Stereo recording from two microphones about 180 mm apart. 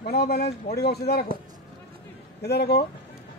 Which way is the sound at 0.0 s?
60° left (ahead or behind).